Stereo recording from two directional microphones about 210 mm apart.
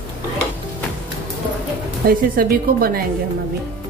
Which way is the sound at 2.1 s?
45° right (ahead or behind).